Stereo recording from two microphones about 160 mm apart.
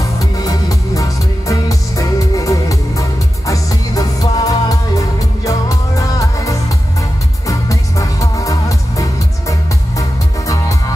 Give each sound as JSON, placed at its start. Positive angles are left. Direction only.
{"t": 0.2, "sound": "music", "side_deg": 20}